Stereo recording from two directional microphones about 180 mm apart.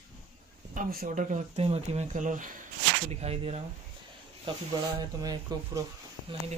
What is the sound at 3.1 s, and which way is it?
Speech, 35° right (ahead or behind).